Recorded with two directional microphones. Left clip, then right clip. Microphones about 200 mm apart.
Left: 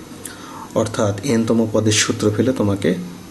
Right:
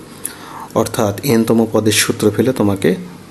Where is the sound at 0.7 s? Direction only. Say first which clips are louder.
Right 3 dB; 25° right (ahead or behind).